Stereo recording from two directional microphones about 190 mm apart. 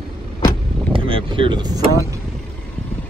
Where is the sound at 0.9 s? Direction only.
25° right (ahead or behind).